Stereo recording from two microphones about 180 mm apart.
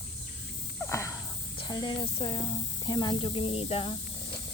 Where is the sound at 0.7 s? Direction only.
15° left (ahead or behind).